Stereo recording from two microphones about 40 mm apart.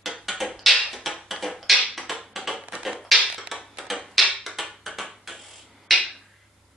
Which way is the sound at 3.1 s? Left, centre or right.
Centre.